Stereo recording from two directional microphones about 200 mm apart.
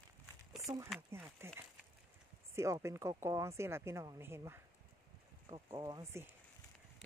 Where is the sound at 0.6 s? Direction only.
15° right (ahead or behind).